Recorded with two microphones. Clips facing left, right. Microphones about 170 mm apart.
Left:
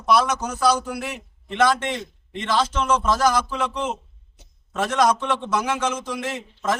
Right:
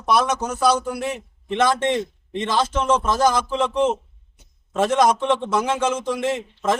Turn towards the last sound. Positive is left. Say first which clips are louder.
# right 4 dB
turn(degrees=-20)  # may be behind; listen again after turning